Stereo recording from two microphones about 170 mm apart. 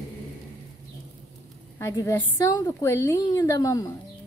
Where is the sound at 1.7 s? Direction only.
15° left (ahead or behind).